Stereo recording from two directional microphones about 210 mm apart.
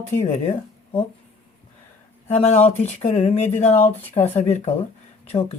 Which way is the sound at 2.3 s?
30° left (ahead or behind).